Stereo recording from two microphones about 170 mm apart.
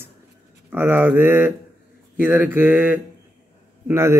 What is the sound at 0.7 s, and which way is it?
Speech, 10° right (ahead or behind).